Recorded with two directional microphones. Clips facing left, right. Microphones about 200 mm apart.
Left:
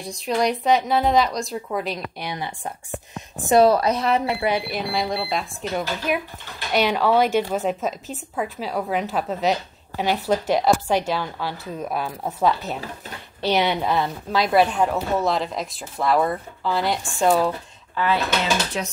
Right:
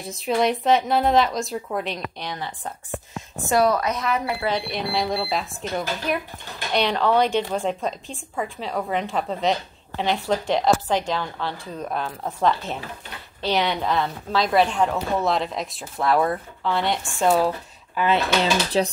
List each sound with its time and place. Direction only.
0.0 s a woman's voice: centre (ahead or behind); by 2.7 s 15° left (ahead or behind)
3.4 s speech: 25° left (ahead or behind)
4.6 s a woman's voice: 5° left (ahead or behind)
17.9 s speech: 20° right (ahead or behind)
18.4 s speech: 35° right (ahead or behind)